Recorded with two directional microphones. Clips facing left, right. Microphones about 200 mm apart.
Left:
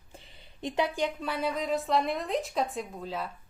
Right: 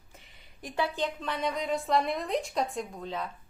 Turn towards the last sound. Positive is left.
turn(degrees=5)  # may be behind; listen again after turning